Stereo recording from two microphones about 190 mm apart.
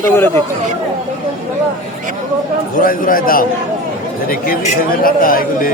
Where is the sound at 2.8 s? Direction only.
45° left (ahead or behind).